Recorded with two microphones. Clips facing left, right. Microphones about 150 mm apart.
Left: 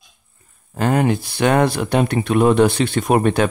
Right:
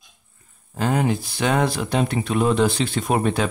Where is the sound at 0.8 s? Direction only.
60° left (ahead or behind).